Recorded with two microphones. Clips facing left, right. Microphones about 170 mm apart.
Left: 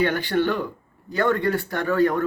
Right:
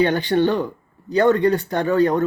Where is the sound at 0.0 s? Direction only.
20° right (ahead or behind).